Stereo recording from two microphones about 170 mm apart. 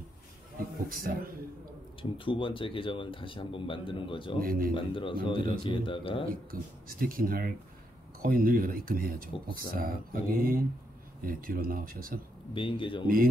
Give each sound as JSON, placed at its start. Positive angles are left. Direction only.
{"t": 0.8, "sound": "speech", "side_deg": -60}
{"t": 2.0, "sound": "speech", "side_deg": 30}
{"t": 4.4, "sound": "speech", "side_deg": -60}
{"t": 4.7, "sound": "speech", "side_deg": 30}
{"t": 6.5, "sound": "speech", "side_deg": -55}
{"t": 12.5, "sound": "speech", "side_deg": 30}